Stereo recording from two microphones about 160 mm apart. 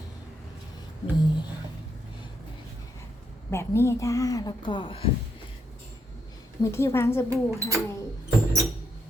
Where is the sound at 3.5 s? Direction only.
15° left (ahead or behind); by 5.1 s 35° left (ahead or behind).